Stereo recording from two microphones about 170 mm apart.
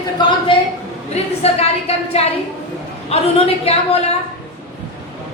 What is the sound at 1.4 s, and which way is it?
A woman's voice, 35° left (ahead or behind).